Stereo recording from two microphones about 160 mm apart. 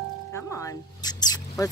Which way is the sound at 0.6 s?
25° left (ahead or behind).